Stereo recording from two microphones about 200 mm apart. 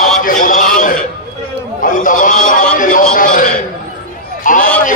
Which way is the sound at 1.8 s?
40° left (ahead or behind).